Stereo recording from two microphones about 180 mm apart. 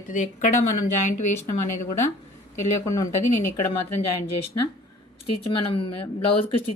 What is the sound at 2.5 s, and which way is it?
Speech, 15° left (ahead or behind).